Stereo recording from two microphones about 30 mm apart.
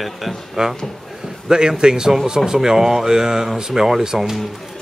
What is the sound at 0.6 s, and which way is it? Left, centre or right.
Speech, right.